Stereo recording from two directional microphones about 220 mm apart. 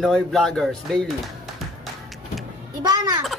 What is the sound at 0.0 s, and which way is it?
Speech, centre (ahead or behind).